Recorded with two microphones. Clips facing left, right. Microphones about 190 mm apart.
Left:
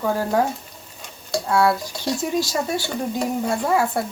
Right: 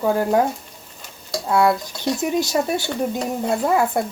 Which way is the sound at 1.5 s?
20° right (ahead or behind).